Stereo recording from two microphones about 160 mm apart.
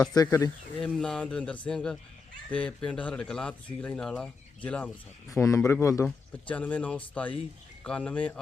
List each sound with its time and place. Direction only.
0.1 s a man's voice: 20° left (ahead or behind)
0.8 s speech: 5° left (ahead or behind)
5.4 s a man's voice: 20° left (ahead or behind)